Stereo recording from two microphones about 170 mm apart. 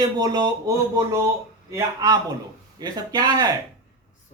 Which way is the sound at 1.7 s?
20° right (ahead or behind).